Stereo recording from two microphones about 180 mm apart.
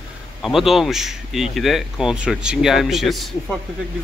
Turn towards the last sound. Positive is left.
turn(degrees=0)  # may be behind; listen again after turning